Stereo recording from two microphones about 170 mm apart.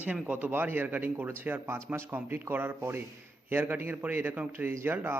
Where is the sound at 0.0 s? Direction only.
10° right (ahead or behind).